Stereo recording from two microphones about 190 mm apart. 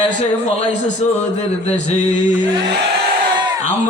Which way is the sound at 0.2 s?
40° left (ahead or behind).